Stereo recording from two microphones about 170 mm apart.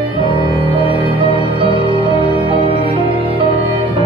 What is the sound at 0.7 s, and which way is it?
Music, 30° right (ahead or behind).